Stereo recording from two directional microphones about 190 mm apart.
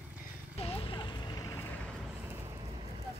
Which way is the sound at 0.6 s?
30° left (ahead or behind).